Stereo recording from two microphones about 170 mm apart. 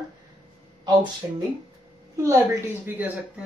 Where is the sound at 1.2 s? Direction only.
15° right (ahead or behind).